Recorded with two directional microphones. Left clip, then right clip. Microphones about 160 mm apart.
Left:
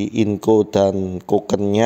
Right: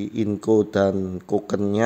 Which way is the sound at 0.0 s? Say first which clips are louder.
Left 6 dB; 15° left (ahead or behind).